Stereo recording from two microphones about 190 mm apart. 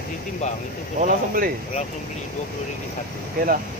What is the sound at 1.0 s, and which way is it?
Speech, 45° right (ahead or behind).